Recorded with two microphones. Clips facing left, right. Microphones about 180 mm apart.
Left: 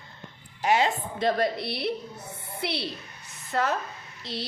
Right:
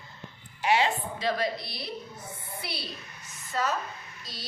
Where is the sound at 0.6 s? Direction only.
45° left (ahead or behind); by 3.7 s 65° left (ahead or behind).